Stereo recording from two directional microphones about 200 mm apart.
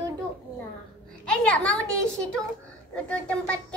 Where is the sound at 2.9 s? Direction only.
5° left (ahead or behind).